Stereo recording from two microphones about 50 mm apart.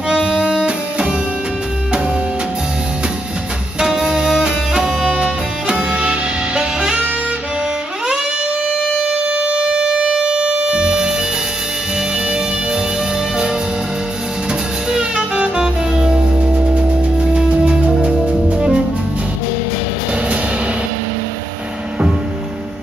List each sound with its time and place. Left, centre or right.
0.1 s music: centre
3.8 s music: centre
9.0 s music: right
15.1 s saxophone: right
16.5 s music: right